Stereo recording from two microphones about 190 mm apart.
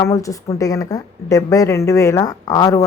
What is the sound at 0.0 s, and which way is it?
Speech, 15° left (ahead or behind).